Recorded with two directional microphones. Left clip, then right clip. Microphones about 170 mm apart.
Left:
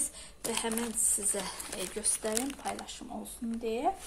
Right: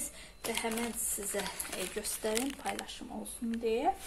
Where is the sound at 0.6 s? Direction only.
5° left (ahead or behind).